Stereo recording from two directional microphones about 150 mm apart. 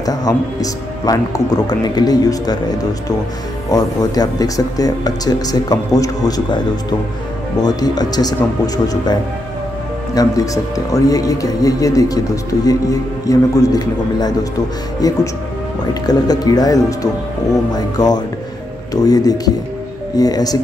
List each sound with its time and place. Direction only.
0.0 s speech: 25° left (ahead or behind)
15.9 s speech: 25° left (ahead or behind)